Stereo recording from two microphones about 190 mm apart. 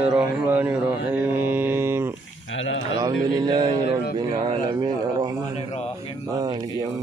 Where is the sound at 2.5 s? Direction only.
90° left.